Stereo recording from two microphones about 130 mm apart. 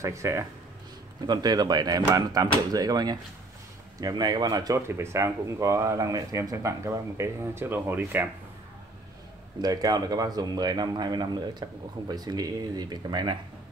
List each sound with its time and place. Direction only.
0.0 s speech: 25° right (ahead or behind)
9.6 s speech: 30° right (ahead or behind)